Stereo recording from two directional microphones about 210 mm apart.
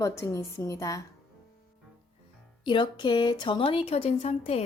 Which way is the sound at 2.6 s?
20° left (ahead or behind).